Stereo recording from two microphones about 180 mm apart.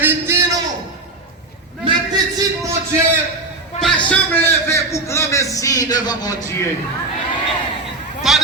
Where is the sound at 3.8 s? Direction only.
5° left (ahead or behind).